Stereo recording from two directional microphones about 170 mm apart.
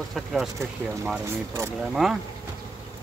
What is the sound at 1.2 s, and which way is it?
Speech, 15° right (ahead or behind).